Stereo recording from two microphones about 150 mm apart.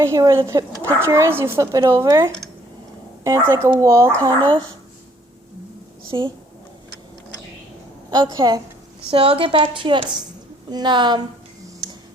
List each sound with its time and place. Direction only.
0.0 s speech: 20° right (ahead or behind)
6.1 s a woman's voice: 30° right (ahead or behind)
8.1 s speech: 25° right (ahead or behind)
9.0 s a woman's voice: 40° right (ahead or behind)
11.8 s tick: 30° right (ahead or behind)